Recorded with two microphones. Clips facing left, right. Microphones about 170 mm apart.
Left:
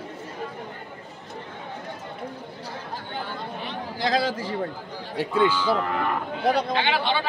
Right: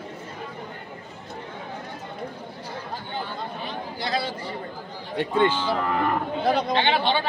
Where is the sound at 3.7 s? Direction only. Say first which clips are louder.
Left 5 dB; 90° left.